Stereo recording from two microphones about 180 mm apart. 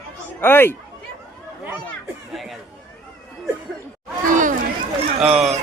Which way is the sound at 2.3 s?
Centre (ahead or behind).